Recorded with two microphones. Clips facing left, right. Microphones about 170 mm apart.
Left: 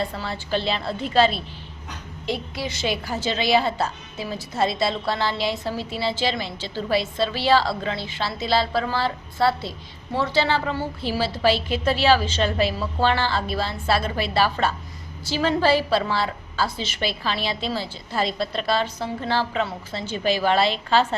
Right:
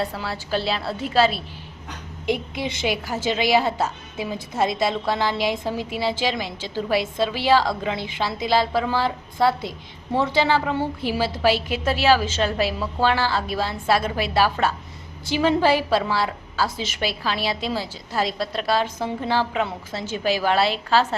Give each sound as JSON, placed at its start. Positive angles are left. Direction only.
{"t": 0.0, "sound": "a woman's voice", "side_deg": -5}
{"t": 2.2, "sound": "a woman's voice", "side_deg": -20}